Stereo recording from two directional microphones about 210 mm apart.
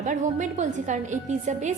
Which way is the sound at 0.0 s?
35° right (ahead or behind).